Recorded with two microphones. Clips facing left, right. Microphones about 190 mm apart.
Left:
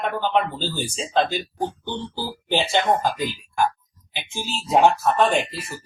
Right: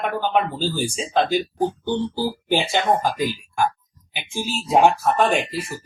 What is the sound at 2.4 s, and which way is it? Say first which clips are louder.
Speech: left 1 dB; 10° right (ahead or behind).